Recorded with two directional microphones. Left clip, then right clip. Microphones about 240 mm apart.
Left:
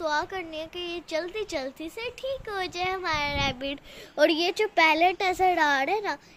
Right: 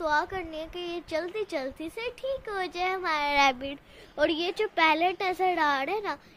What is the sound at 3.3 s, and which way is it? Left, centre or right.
Speech, right.